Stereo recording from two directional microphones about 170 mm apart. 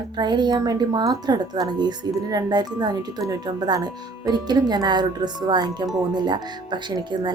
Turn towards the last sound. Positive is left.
turn(degrees=-25)  # may be behind; listen again after turning